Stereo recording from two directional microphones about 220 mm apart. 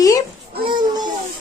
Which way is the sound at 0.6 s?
20° right (ahead or behind).